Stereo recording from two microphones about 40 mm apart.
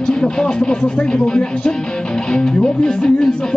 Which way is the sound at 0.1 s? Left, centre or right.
Centre.